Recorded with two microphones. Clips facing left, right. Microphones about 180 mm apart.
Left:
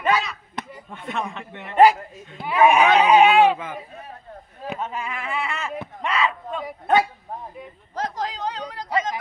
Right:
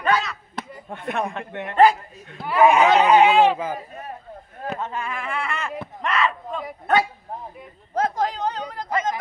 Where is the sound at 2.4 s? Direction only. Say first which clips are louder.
Right 1 dB; 10° left (ahead or behind).